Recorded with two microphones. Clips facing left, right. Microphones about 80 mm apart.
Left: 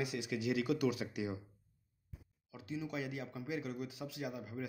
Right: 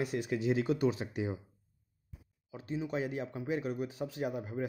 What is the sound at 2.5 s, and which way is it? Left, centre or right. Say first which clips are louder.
Speech: right 5 dB; right.